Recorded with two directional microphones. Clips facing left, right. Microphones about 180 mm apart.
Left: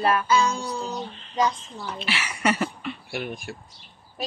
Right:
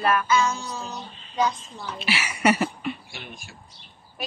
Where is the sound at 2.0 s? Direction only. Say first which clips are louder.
Right 3 dB; 10° right (ahead or behind).